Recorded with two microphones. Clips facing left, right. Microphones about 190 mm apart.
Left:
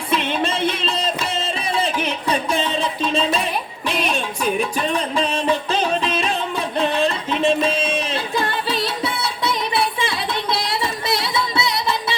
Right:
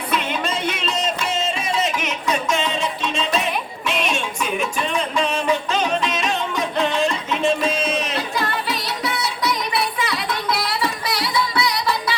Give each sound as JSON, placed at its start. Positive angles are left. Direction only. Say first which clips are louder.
{"t": 0.1, "sound": "music", "louder": "left 3 dB", "side_deg": 30}